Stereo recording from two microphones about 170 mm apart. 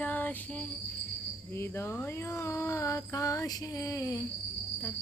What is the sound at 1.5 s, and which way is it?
Speech, 15° left (ahead or behind).